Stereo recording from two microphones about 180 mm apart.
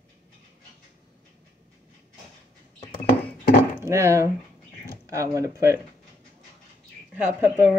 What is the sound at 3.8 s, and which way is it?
Speech, 15° right (ahead or behind).